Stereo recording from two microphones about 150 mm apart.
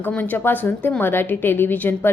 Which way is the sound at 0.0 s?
10° left (ahead or behind).